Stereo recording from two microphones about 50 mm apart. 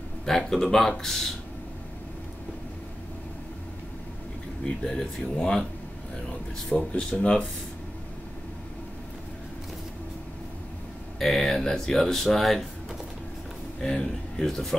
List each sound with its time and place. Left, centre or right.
0.2 s speech: centre
4.6 s speech: centre
7.0 s speech: centre
11.1 s speech: centre
13.7 s speech: centre